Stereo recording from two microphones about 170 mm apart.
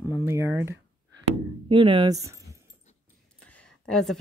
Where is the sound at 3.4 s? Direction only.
5° left (ahead or behind).